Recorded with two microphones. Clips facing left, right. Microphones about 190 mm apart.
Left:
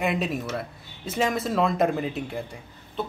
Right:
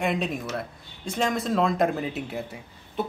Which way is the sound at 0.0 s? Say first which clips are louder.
Left 1 dB; centre (ahead or behind).